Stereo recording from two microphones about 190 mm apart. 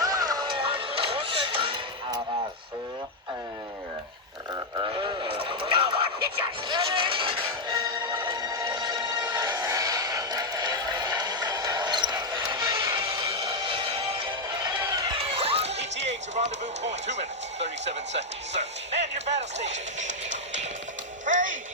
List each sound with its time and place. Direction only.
0.0 s music: 20° right (ahead or behind)
4.5 s radio: 25° right (ahead or behind)
6.7 s music: 25° right (ahead or behind)
17.8 s speech: 70° right (ahead or behind)
21.2 s music: 40° right (ahead or behind)